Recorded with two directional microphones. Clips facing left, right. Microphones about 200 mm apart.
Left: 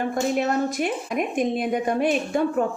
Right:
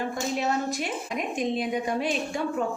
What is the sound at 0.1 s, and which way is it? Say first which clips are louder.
Speech: left 5 dB; 55° left (ahead or behind).